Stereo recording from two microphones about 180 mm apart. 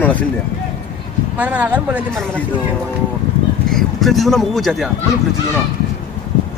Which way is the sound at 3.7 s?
Centre (ahead or behind).